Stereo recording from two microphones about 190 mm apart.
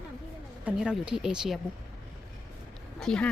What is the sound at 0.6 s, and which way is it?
Speech, 5° right (ahead or behind).